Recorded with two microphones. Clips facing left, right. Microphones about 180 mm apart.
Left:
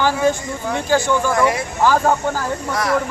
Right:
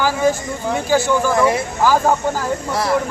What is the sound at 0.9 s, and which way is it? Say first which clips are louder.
Speech: right 1 dB; 5° right (ahead or behind).